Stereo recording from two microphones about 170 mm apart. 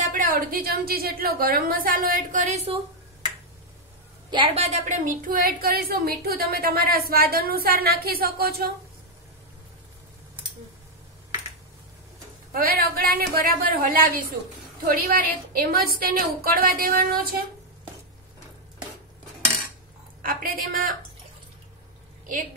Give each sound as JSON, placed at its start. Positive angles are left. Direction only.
{"t": 0.1, "sound": "a woman's voice", "side_deg": -55}
{"t": 4.3, "sound": "a woman's voice", "side_deg": -35}
{"t": 12.5, "sound": "a woman's voice", "side_deg": -60}
{"t": 20.2, "sound": "a woman's voice", "side_deg": -55}